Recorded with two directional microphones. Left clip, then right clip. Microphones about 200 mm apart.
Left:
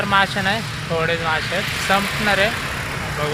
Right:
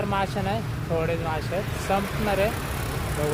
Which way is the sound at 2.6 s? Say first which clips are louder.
Left 7 dB; 55° right (ahead or behind).